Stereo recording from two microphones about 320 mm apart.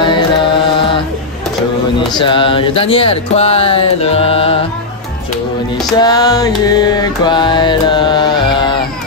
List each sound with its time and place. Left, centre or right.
0.7 s a sound: centre
2.1 s music: centre
5.9 s music: centre